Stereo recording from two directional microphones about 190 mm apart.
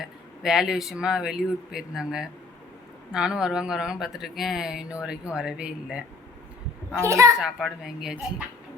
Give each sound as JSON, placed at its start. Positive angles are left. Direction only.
{"t": 0.0, "sound": "speech", "side_deg": 0}
{"t": 7.0, "sound": "a child's voice", "side_deg": -15}
{"t": 7.4, "sound": "speech", "side_deg": -5}